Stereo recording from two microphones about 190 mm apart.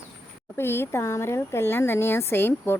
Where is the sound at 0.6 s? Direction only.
10° left (ahead or behind).